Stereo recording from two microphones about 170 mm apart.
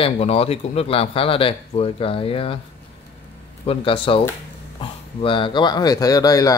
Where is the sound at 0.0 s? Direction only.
35° left (ahead or behind).